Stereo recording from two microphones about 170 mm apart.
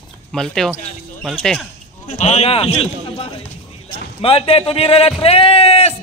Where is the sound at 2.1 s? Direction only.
40° left (ahead or behind).